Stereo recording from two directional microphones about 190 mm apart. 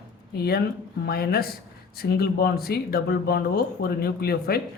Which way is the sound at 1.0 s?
55° left (ahead or behind).